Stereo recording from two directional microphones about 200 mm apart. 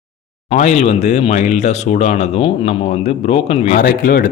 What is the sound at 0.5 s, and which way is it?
Speech, 35° left (ahead or behind).